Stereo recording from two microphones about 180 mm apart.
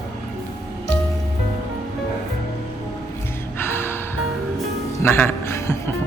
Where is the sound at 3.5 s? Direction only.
15° left (ahead or behind).